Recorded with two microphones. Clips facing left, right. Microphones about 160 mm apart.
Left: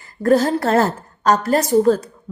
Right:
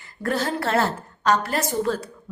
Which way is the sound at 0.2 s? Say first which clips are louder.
Left 9 dB; 40° left (ahead or behind).